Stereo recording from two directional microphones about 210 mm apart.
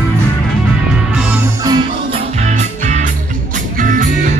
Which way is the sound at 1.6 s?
20° right (ahead or behind).